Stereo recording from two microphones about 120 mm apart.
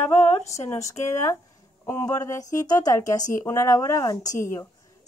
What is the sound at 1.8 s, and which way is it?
A woman's voice, 25° left (ahead or behind).